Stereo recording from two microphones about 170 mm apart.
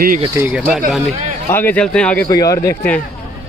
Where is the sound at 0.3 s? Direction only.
10° right (ahead or behind); by 2.2 s 5° left (ahead or behind).